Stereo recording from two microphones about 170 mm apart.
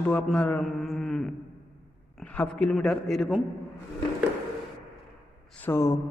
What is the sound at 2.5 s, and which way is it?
Speech, centre (ahead or behind).